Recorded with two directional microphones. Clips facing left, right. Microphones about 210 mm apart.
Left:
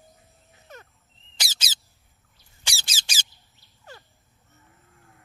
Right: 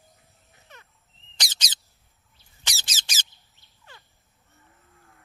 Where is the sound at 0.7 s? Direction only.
45° left (ahead or behind).